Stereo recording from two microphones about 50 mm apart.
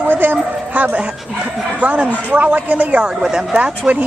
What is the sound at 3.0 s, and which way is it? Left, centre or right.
Speech, centre.